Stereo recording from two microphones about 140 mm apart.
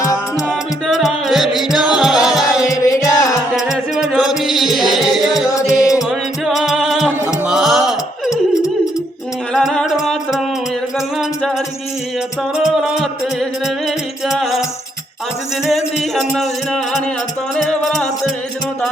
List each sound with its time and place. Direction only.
0.0 s music: 20° left (ahead or behind)
0.4 s music: centre (ahead or behind)
2.6 s music: 25° left (ahead or behind)
3.5 s music: centre (ahead or behind)
5.8 s music: 25° left (ahead or behind)
6.1 s music: centre (ahead or behind)
8.3 s music: 25° left (ahead or behind)
9.5 s music: 5° left (ahead or behind)
12.6 s music: centre (ahead or behind)
15.6 s music: centre (ahead or behind)